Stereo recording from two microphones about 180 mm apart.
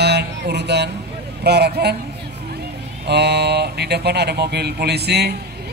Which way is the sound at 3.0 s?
65° right (ahead or behind).